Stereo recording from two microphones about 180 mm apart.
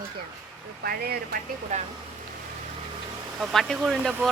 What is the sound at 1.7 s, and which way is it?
Speech, 40° right (ahead or behind).